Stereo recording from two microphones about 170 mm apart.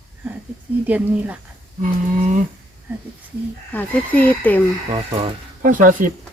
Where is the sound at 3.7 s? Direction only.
10° left (ahead or behind).